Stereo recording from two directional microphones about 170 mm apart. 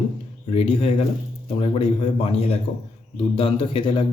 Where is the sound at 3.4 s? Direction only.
30° left (ahead or behind).